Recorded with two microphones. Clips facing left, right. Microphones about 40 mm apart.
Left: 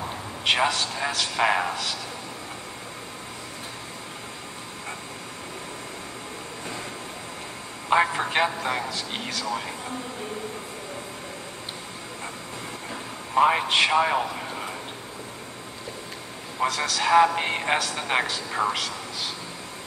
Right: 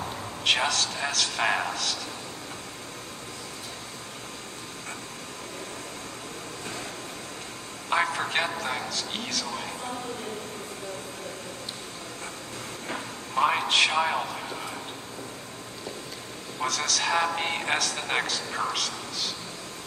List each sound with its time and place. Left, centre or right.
0.5 s a man's voice: centre
7.9 s a man's voice: centre
13.3 s a man's voice: centre
16.5 s a man's voice: centre